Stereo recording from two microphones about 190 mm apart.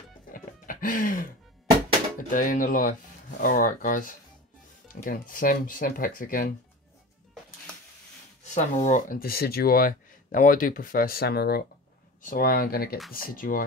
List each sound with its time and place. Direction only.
0.3 s music: 45° left (ahead or behind)
2.1 s speech: 45° left (ahead or behind)
5.3 s speech: 45° left (ahead or behind)
8.5 s speech: 40° left (ahead or behind)